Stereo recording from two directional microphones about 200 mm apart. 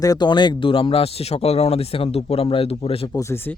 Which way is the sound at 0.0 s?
20° left (ahead or behind).